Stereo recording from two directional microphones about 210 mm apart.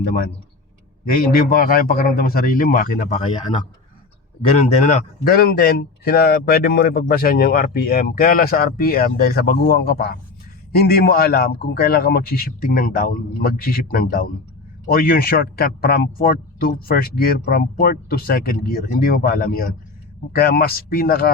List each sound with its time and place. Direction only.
1.1 s speech: 45° left (ahead or behind)
4.5 s speech: 30° left (ahead or behind)